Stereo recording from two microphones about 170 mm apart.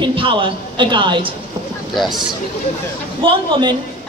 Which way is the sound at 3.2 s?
30° right (ahead or behind).